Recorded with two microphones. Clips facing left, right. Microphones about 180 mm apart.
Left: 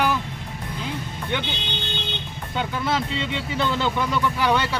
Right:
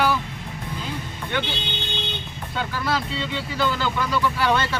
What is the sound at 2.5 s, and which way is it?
Speech, 20° left (ahead or behind).